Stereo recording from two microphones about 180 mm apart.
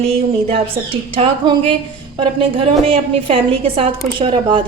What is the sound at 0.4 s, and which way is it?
A woman's voice, 30° right (ahead or behind).